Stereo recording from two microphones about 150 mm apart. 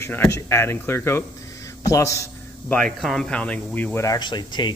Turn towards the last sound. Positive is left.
turn(degrees=30)  # may be behind; listen again after turning